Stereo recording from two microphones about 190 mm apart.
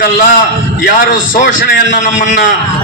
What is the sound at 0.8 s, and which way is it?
A man's voice, 45° left (ahead or behind).